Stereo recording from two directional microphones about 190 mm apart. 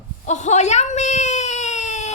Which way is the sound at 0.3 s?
40° left (ahead or behind).